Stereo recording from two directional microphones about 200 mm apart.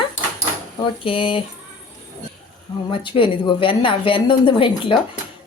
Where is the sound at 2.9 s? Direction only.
25° left (ahead or behind).